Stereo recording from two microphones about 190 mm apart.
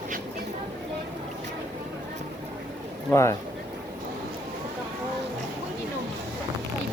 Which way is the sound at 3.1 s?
15° left (ahead or behind).